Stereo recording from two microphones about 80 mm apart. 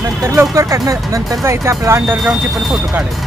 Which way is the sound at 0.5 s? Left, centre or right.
Right.